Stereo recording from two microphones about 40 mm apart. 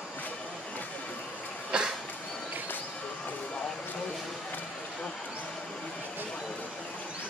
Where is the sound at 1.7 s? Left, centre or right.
Right.